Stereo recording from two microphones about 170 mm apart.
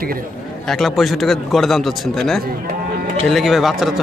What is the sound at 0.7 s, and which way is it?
A man's voice, centre (ahead or behind).